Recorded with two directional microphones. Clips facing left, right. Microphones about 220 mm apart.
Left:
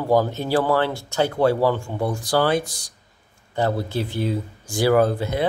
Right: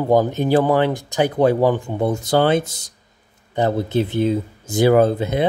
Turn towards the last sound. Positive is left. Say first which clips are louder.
# right 3 dB
turn(degrees=-20)  # may be behind; listen again after turning